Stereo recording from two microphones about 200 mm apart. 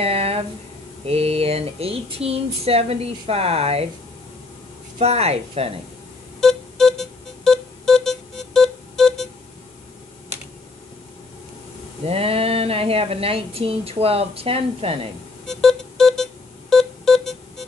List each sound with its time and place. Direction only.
0.0 s a sound: 30° right (ahead or behind)
1.0 s speech: 30° right (ahead or behind)
4.9 s speech: 30° right (ahead or behind)
6.4 s music: centre (ahead or behind)
12.1 s speech: 30° right (ahead or behind)
15.4 s music: centre (ahead or behind)